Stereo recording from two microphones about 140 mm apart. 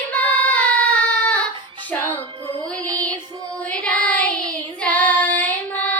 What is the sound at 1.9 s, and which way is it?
Music, 15° left (ahead or behind).